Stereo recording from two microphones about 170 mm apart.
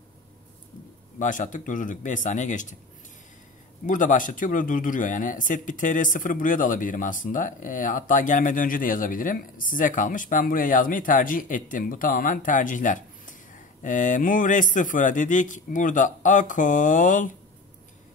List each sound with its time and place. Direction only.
1.2 s speech: 50° left (ahead or behind)
3.8 s speech: 50° left (ahead or behind)